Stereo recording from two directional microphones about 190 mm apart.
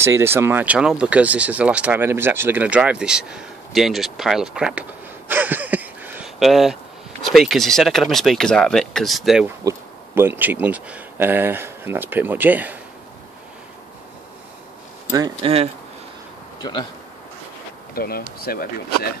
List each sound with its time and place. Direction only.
0.0 s speech: 15° right (ahead or behind)
5.3 s a sound: 10° right (ahead or behind)
7.2 s speech: centre (ahead or behind)
9.7 s speech: 10° right (ahead or behind)
15.0 s speech: 20° right (ahead or behind)
17.9 s speech: 50° left (ahead or behind)